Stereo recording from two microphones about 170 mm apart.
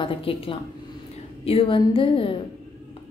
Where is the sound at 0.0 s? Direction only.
30° left (ahead or behind).